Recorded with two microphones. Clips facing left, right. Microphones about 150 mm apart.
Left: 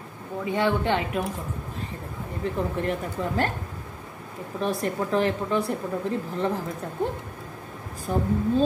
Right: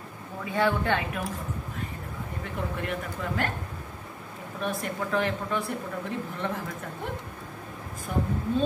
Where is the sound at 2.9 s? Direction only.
35° left (ahead or behind).